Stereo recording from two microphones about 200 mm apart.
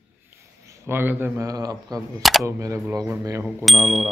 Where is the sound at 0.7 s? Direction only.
10° right (ahead or behind).